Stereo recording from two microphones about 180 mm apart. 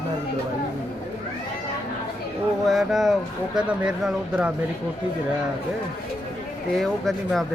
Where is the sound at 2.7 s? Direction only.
Centre (ahead or behind).